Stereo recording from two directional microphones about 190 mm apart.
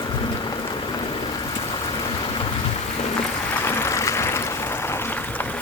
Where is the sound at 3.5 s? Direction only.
15° left (ahead or behind).